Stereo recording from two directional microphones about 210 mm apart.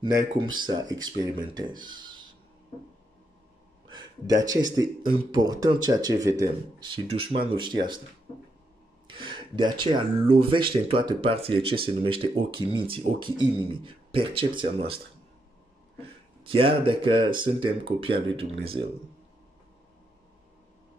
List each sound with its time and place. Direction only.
0.0 s speech: 20° right (ahead or behind)
3.9 s speech: 20° right (ahead or behind)
9.0 s speech: 20° right (ahead or behind)
16.0 s speech: 25° right (ahead or behind)